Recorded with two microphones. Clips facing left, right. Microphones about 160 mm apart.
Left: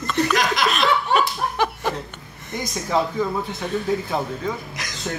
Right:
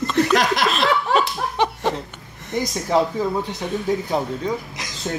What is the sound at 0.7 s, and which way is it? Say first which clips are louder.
Laughter: right 1 dB; 30° right (ahead or behind).